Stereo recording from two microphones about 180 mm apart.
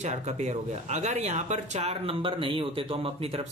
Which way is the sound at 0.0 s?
40° right (ahead or behind).